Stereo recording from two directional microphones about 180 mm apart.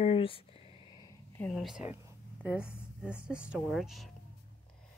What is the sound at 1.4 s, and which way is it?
Speech, centre (ahead or behind).